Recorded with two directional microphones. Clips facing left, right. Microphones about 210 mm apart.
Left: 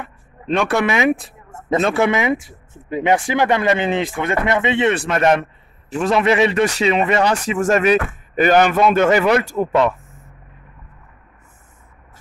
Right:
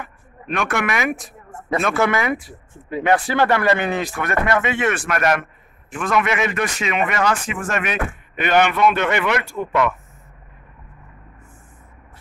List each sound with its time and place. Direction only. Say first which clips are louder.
0.0 s a man's voice: left 3 dB; 30° left (ahead or behind)